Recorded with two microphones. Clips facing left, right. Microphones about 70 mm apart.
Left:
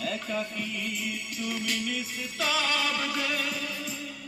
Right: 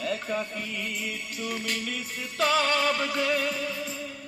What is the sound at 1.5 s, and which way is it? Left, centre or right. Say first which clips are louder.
Music: even; right.